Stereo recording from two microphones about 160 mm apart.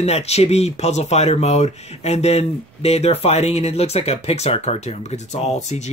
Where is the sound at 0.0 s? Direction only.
40° left (ahead or behind).